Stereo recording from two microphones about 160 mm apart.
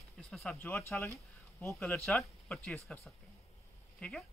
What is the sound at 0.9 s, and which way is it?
Speech, 15° left (ahead or behind).